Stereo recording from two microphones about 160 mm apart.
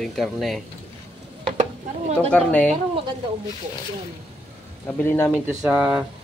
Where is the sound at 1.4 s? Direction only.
45° right (ahead or behind).